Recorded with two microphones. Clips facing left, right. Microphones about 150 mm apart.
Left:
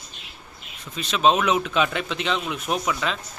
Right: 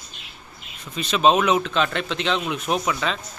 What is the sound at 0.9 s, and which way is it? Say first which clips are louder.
A man's voice: right 2 dB; centre (ahead or behind).